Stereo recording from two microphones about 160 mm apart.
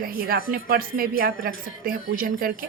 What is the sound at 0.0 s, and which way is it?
A woman's voice, 65° right (ahead or behind).